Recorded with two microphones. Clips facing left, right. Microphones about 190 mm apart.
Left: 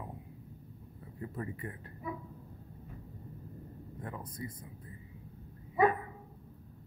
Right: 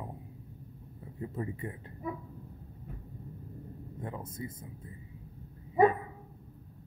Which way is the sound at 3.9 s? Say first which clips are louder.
Right 2 dB; 25° right (ahead or behind).